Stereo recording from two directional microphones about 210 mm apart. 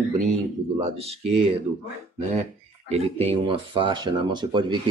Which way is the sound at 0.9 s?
30° right (ahead or behind).